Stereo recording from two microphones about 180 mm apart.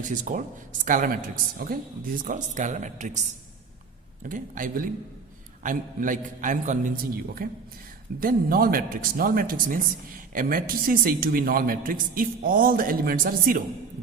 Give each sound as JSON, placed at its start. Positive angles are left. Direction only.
{"t": 0.0, "sound": "a man's voice", "side_deg": -45}
{"t": 4.2, "sound": "a man's voice", "side_deg": -50}